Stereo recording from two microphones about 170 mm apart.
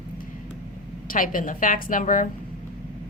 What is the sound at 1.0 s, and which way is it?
A woman's voice, 55° left (ahead or behind).